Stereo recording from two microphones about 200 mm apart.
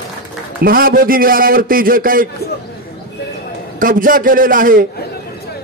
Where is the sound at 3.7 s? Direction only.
45° right (ahead or behind).